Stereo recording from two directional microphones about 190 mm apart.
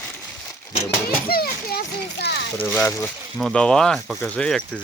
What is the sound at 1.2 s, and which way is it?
Children playing, 55° left (ahead or behind).